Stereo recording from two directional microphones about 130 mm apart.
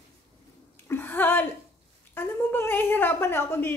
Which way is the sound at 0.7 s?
15° left (ahead or behind).